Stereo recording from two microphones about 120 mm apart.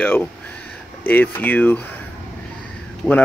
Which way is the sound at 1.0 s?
15° left (ahead or behind).